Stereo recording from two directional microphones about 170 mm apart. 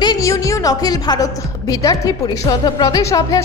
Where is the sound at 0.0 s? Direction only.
20° left (ahead or behind).